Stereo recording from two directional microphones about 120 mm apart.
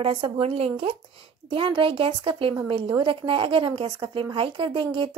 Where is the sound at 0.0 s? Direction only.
50° right (ahead or behind).